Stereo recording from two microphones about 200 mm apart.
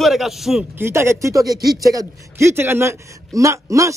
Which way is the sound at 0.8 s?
15° right (ahead or behind).